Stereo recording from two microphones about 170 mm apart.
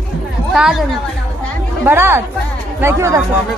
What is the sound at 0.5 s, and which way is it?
Speech, centre (ahead or behind).